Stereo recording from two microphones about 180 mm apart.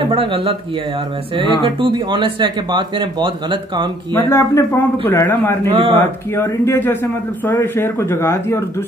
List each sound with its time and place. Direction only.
0.0 s speech: 30° right (ahead or behind)
1.6 s speech: 25° right (ahead or behind)
4.1 s a man's voice: 15° left (ahead or behind)
5.7 s speech: 30° right (ahead or behind)
6.3 s a man's voice: 15° left (ahead or behind)